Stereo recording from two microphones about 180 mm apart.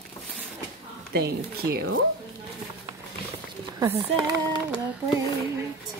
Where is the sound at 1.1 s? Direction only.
60° right (ahead or behind).